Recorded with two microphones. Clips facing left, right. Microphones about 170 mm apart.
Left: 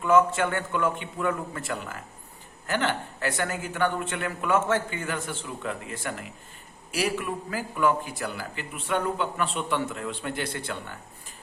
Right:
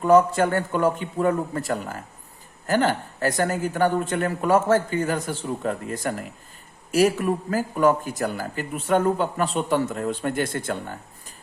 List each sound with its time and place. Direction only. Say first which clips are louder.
0.0 s a man's voice: right 4 dB; 35° right (ahead or behind)